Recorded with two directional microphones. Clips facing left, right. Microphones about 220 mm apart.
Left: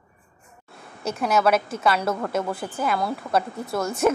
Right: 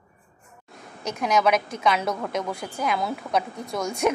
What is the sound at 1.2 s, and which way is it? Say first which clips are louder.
A woman's voice: left 1 dB; 5° left (ahead or behind).